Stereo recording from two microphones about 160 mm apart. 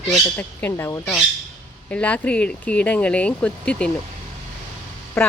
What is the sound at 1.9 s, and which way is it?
Speech, 10° left (ahead or behind).